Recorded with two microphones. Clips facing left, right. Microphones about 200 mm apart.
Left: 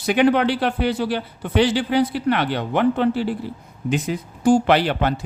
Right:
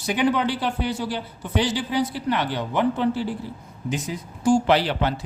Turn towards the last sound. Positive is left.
turn(degrees=55)  # may be behind; listen again after turning